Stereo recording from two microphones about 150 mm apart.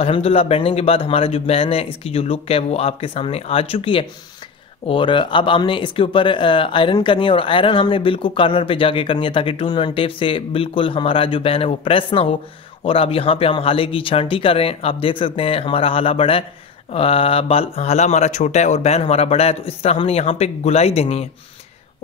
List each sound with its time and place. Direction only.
0.0 s speech: 40° left (ahead or behind)